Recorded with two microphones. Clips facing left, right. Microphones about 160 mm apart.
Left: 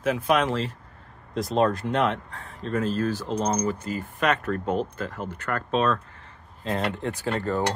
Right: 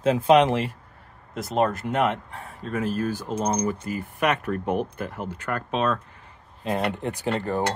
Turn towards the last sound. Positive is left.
turn(degrees=-15)  # may be behind; listen again after turning